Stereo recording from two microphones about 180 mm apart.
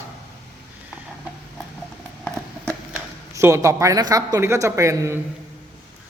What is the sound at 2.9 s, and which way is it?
Speech, 15° right (ahead or behind).